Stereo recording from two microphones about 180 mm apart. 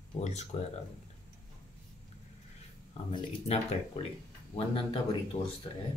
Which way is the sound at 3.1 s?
35° left (ahead or behind).